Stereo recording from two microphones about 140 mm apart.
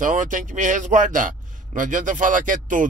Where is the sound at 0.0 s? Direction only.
65° right (ahead or behind).